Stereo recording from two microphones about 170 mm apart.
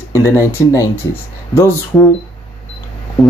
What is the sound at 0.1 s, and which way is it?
Speech, 15° left (ahead or behind).